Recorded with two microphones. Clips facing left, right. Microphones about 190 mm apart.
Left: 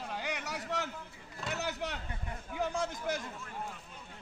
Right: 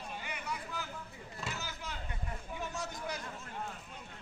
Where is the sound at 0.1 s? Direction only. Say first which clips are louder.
Left 3 dB; 90° left.